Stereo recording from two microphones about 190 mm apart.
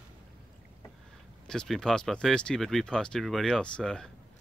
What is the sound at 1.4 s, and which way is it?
Speech, 5° left (ahead or behind).